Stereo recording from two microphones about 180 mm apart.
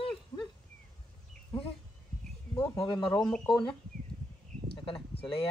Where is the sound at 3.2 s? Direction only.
5° left (ahead or behind).